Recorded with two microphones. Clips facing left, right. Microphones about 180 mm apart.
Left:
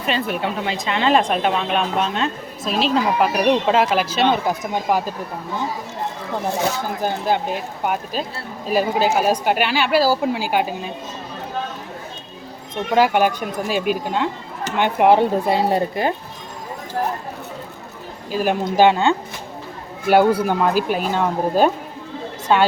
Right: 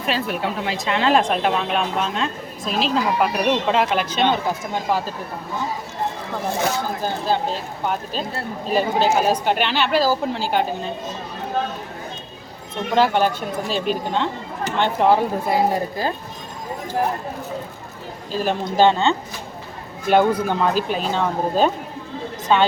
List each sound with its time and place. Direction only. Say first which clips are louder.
0.0 s speech: left 1 dB; centre (ahead or behind); by 5.1 s 15° left (ahead or behind)
7.0 s speech: left 3 dB; 15° left (ahead or behind)
12.9 s speech: left 2 dB; 10° left (ahead or behind)
18.3 s speech: left 3 dB; 10° left (ahead or behind)